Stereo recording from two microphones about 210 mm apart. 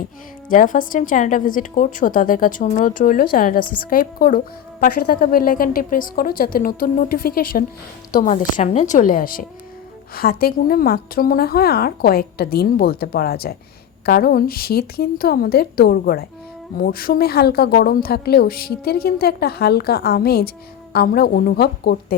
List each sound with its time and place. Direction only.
0.4 s a woman's voice: 40° left (ahead or behind)